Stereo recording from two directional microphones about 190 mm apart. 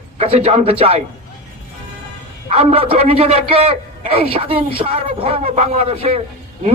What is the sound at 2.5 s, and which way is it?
A man's voice, 30° right (ahead or behind).